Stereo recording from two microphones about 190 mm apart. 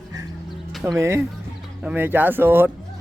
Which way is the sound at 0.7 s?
Centre (ahead or behind).